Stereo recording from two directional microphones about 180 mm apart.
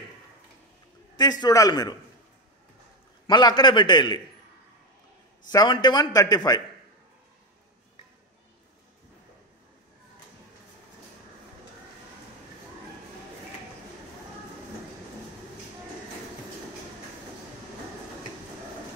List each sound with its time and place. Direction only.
1.1 s a man's voice: 25° left (ahead or behind)
3.3 s a man's voice: 25° left (ahead or behind)
5.5 s a man's voice: 25° left (ahead or behind)